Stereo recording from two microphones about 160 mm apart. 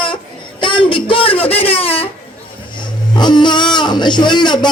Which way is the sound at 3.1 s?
25° left (ahead or behind).